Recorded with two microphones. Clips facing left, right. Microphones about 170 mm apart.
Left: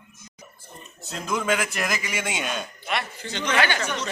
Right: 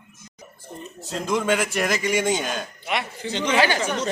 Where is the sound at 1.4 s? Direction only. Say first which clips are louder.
Right 3 dB; centre (ahead or behind).